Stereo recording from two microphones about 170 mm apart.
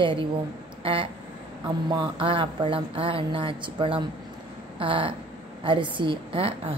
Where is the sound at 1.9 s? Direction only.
30° right (ahead or behind).